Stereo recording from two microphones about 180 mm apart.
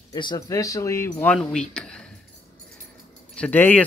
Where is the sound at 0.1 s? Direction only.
20° left (ahead or behind); by 2.0 s 5° left (ahead or behind).